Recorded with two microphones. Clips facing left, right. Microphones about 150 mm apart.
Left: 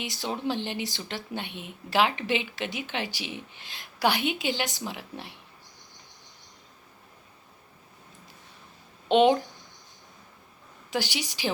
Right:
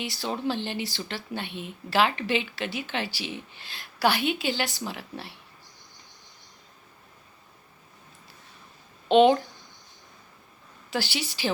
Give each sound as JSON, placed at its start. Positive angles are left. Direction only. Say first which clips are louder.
{"t": 0.0, "sound": "speech", "louder": "right 1 dB", "side_deg": 15}
{"t": 9.0, "sound": "speech", "louder": "right 2 dB", "side_deg": 15}
{"t": 10.9, "sound": "speech", "louder": "even", "side_deg": 15}